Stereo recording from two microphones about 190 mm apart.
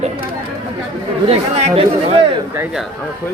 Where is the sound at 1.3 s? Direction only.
35° right (ahead or behind).